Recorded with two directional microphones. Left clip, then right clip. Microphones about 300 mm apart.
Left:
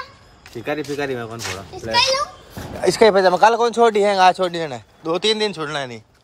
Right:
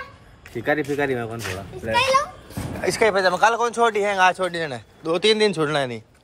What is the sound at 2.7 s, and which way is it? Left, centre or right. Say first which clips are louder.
Speech: left 6 dB; left.